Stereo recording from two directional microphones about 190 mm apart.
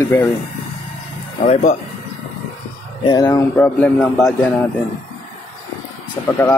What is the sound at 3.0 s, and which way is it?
Speech, 20° left (ahead or behind).